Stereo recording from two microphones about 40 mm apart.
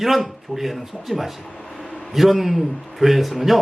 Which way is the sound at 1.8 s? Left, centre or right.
Centre.